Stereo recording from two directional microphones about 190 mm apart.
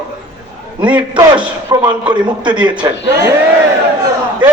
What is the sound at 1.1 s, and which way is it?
A man's voice, 20° right (ahead or behind).